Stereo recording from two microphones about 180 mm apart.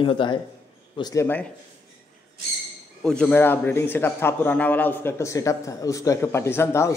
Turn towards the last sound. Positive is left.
turn(degrees=15)  # may be behind; listen again after turning